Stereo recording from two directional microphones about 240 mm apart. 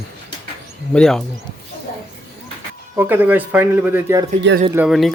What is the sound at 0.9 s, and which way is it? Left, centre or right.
Speech, centre.